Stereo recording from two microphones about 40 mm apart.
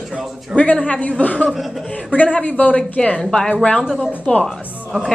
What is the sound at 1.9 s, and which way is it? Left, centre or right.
A woman's voice, left.